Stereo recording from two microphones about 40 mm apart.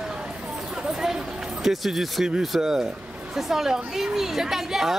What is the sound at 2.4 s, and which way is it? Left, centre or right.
A woman's voice, centre.